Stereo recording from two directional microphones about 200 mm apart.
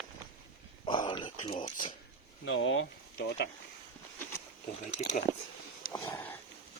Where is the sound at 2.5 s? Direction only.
70° left (ahead or behind).